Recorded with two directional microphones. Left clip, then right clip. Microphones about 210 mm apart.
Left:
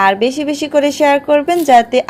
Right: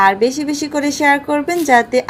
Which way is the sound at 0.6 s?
35° left (ahead or behind).